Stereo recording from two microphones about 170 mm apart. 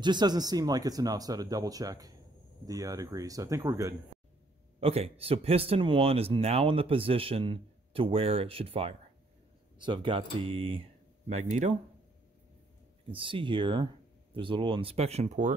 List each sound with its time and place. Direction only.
0.0 s speech: 25° right (ahead or behind)
4.7 s speech: 35° right (ahead or behind)
13.1 s speech: 30° right (ahead or behind)